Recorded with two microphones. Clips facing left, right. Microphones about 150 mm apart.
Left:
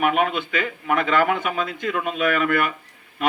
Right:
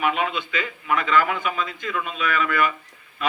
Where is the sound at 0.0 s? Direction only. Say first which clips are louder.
Left 3 dB; 50° left (ahead or behind).